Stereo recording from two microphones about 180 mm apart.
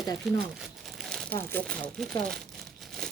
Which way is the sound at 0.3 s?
Centre (ahead or behind).